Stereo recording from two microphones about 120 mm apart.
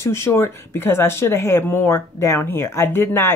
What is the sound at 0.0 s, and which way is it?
Speech, 20° left (ahead or behind).